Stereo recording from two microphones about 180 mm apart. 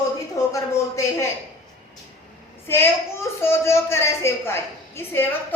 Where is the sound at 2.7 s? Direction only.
15° left (ahead or behind).